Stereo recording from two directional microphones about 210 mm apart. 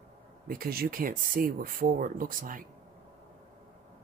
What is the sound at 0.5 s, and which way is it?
Speech, 45° right (ahead or behind).